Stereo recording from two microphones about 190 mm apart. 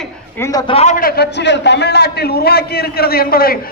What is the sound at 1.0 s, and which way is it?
A man's voice, 55° left (ahead or behind).